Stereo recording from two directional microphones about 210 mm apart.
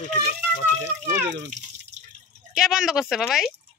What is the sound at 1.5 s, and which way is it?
Drip, 35° right (ahead or behind).